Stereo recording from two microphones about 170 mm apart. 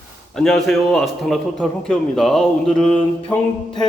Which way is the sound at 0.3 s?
5° left (ahead or behind).